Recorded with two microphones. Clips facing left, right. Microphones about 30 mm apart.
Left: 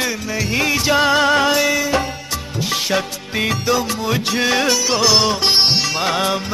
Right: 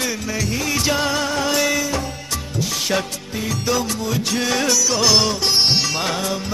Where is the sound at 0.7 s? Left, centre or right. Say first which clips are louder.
Left 5 dB; left.